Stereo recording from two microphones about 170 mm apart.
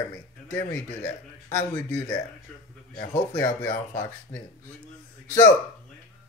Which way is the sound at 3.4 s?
15° left (ahead or behind).